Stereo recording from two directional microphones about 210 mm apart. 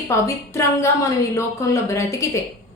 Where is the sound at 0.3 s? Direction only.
15° left (ahead or behind).